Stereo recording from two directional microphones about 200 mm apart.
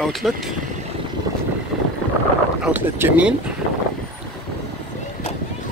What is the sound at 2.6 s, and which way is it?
Speech, 10° right (ahead or behind).